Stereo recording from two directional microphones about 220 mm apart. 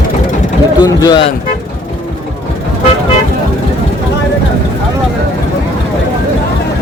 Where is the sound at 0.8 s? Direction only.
20° left (ahead or behind).